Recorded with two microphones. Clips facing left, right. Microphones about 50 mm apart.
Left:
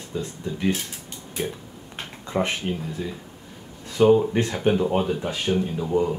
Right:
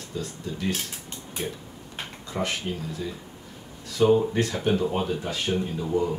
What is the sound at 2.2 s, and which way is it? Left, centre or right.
Speech, left.